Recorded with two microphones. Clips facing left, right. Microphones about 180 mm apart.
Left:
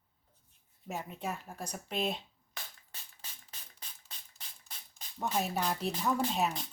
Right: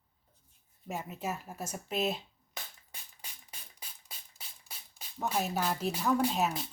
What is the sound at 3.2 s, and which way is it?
Music, 10° right (ahead or behind).